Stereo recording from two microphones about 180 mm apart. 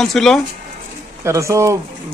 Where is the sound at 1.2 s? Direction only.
15° right (ahead or behind).